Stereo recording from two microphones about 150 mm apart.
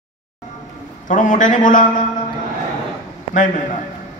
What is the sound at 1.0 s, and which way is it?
A man's voice, 60° left (ahead or behind).